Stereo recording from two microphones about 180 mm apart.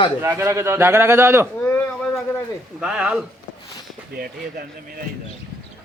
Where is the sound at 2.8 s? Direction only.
5° right (ahead or behind).